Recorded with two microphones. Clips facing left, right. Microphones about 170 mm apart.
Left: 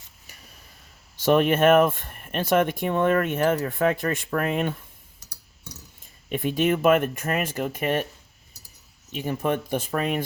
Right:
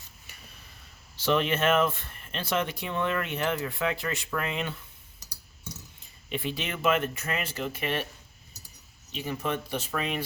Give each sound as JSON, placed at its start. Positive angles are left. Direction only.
{"t": 1.2, "sound": "speech", "side_deg": 50}
{"t": 6.0, "sound": "speech", "side_deg": 50}
{"t": 9.1, "sound": "speech", "side_deg": 50}